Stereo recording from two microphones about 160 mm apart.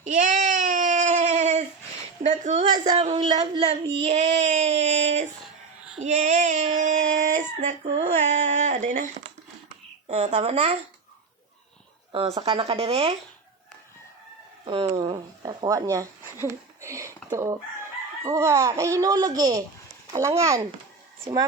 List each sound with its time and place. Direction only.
0.0 s child singing: 50° right (ahead or behind)
2.2 s speech: 50° right (ahead or behind)
2.9 s child singing: 40° right (ahead or behind)
6.0 s speech: 50° right (ahead or behind)
10.1 s child singing: 40° right (ahead or behind)
12.1 s child singing: 35° right (ahead or behind)
14.7 s child singing: 35° right (ahead or behind)
15.4 s a child's voice: 20° right (ahead or behind)